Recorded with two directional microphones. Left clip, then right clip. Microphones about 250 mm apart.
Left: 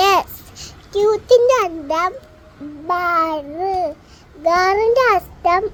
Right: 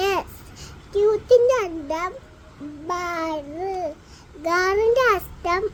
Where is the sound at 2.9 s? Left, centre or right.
Centre.